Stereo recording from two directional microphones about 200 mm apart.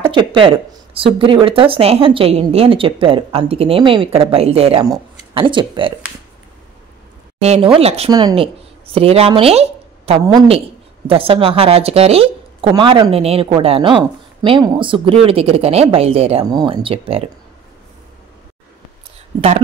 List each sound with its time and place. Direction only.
0.1 s speech: 25° right (ahead or behind)
7.4 s a woman's voice: 30° right (ahead or behind)
10.2 s speech: 20° right (ahead or behind)